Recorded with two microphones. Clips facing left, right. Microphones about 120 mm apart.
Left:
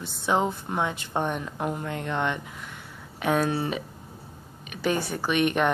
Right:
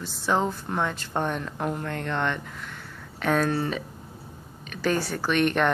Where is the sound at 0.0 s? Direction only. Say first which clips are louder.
Even; 20° left (ahead or behind).